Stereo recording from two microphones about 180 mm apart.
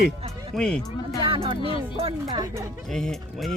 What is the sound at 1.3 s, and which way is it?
Speech, 30° right (ahead or behind).